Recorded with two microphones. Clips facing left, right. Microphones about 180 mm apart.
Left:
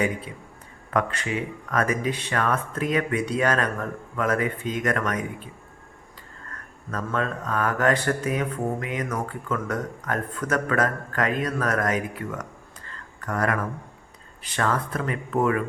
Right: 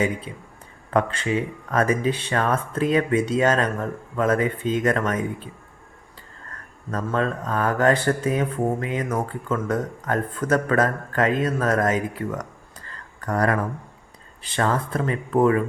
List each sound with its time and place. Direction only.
0.3 s speech: 25° right (ahead or behind)
6.9 s speech: 30° right (ahead or behind)
13.2 s speech: 35° right (ahead or behind)